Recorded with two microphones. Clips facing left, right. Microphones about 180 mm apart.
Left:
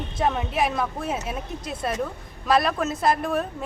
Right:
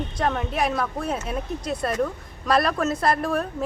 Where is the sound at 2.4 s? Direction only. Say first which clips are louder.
Even; centre (ahead or behind).